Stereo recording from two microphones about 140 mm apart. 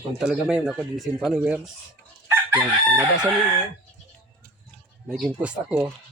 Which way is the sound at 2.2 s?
15° right (ahead or behind).